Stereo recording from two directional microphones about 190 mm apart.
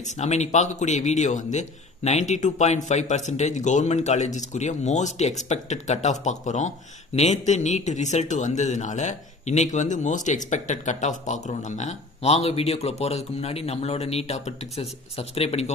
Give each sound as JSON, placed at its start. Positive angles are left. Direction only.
{"t": 0.0, "sound": "speech", "side_deg": 35}